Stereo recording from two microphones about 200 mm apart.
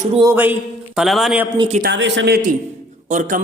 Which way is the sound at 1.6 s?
30° right (ahead or behind).